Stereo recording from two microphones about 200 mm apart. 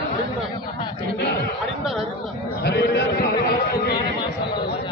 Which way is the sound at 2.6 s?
55° left (ahead or behind).